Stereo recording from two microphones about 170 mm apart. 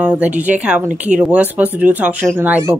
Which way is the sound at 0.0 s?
10° right (ahead or behind).